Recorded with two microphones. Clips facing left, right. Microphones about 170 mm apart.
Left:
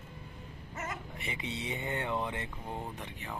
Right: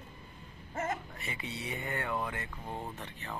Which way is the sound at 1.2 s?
20° left (ahead or behind).